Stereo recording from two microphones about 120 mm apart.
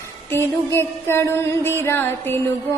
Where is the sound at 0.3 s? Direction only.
20° left (ahead or behind).